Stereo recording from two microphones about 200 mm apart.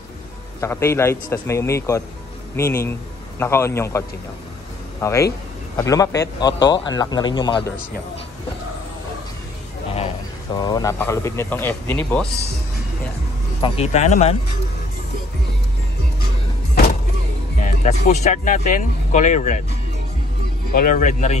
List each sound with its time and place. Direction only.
0.6 s speech: 15° left (ahead or behind)
5.0 s a man's voice: 15° left (ahead or behind)
10.5 s speech: 20° left (ahead or behind)
13.6 s speech: 30° left (ahead or behind)
17.8 s speech: 35° left (ahead or behind)
20.7 s speech: 45° left (ahead or behind)